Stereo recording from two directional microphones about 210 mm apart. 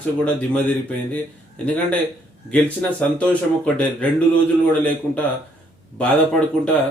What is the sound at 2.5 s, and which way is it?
Speech, 5° left (ahead or behind).